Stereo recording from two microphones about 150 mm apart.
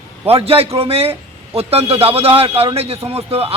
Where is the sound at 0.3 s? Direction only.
40° right (ahead or behind).